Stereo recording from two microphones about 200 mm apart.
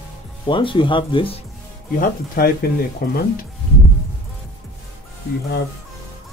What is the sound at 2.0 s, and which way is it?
Speech, 50° left (ahead or behind).